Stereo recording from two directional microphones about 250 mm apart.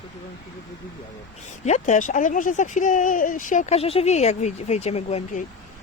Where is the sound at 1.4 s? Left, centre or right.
Left.